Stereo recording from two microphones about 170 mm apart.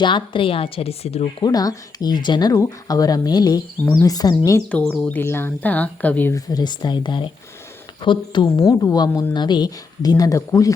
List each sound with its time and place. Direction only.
0.0 s speech: 30° left (ahead or behind)
1.5 s a woman's voice: 20° left (ahead or behind)
4.7 s a woman's voice: 5° left (ahead or behind)